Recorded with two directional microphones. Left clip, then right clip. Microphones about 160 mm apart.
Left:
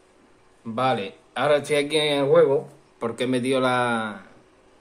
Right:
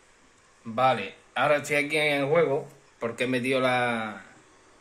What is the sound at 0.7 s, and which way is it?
Speech, centre (ahead or behind).